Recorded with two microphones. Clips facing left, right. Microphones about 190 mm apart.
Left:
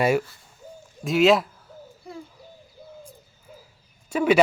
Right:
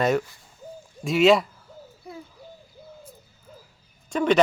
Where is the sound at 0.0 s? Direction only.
10° left (ahead or behind).